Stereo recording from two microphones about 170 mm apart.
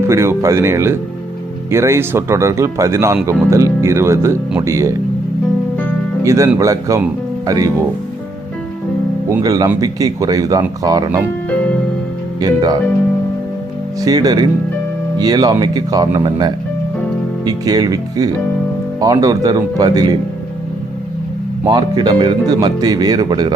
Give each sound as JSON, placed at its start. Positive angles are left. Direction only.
{"t": 0.1, "sound": "speech", "side_deg": -15}
{"t": 6.2, "sound": "speech", "side_deg": -15}
{"t": 9.4, "sound": "speech", "side_deg": -20}
{"t": 12.4, "sound": "speech", "side_deg": -25}
{"t": 14.0, "sound": "speech", "side_deg": -20}
{"t": 21.7, "sound": "speech", "side_deg": -25}